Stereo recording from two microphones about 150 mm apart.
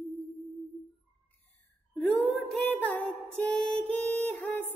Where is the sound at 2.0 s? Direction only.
10° left (ahead or behind).